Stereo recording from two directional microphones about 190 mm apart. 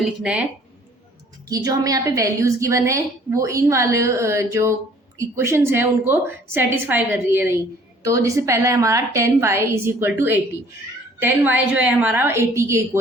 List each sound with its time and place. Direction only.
0.0 s speech: 5° right (ahead or behind)
1.5 s a woman's voice: 20° right (ahead or behind)